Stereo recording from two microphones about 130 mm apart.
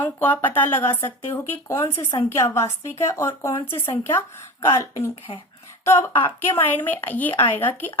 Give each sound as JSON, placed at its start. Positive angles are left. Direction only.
{"t": 0.0, "sound": "speech", "side_deg": 15}